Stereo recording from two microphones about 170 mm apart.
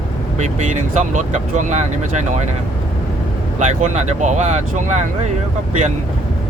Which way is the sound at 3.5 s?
45° right (ahead or behind).